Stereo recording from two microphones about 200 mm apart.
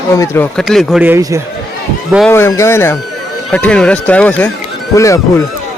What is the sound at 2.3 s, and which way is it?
Speech, 15° left (ahead or behind).